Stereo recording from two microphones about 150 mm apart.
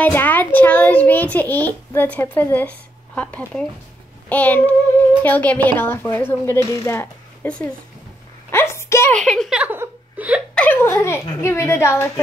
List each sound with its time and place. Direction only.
0.0 s a child's voice: 10° left (ahead or behind)
9.1 s a woman's voice: 5° left (ahead or behind)
9.6 s speech: 10° right (ahead or behind)
10.5 s a child's voice: 10° left (ahead or behind)